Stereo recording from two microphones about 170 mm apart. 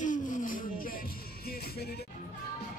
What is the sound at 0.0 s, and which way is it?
Music, 50° left (ahead or behind).